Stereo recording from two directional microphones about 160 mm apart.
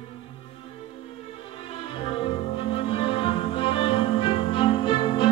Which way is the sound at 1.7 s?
35° left (ahead or behind).